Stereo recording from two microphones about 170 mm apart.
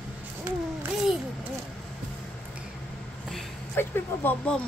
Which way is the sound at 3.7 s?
10° left (ahead or behind).